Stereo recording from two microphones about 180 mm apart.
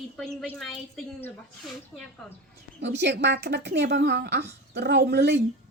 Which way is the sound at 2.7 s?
70° right (ahead or behind).